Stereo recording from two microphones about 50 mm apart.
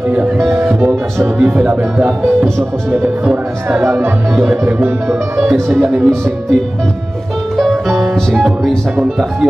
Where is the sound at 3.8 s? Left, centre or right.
Right.